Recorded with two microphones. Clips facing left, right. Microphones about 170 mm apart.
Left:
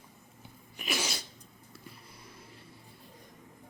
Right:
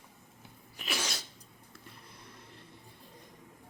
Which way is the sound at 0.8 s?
10° left (ahead or behind).